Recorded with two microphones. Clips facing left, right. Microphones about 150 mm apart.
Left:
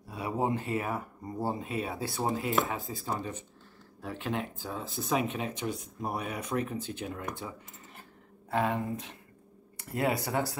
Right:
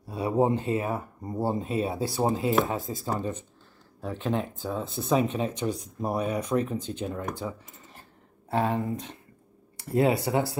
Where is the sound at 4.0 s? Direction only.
30° right (ahead or behind).